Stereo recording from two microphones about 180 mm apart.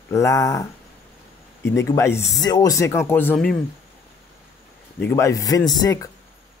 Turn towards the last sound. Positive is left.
turn(degrees=20)  # may be behind; listen again after turning